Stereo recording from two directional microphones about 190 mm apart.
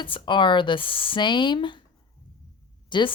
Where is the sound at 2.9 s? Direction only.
25° left (ahead or behind).